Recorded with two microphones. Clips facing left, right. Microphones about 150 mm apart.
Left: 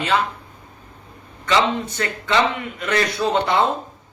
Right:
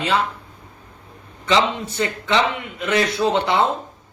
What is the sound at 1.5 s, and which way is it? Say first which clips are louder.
A man's voice: even; 25° right (ahead or behind).